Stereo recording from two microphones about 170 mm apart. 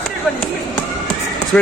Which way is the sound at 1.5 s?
5° left (ahead or behind).